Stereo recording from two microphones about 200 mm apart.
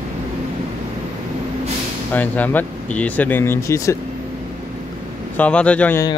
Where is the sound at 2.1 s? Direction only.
10° left (ahead or behind).